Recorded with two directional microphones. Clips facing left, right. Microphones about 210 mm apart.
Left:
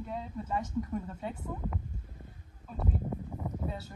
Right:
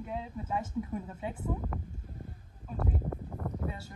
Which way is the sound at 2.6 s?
Centre (ahead or behind).